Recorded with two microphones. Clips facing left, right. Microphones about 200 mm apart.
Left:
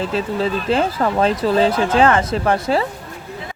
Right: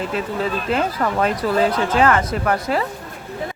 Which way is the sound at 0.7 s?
30° left (ahead or behind).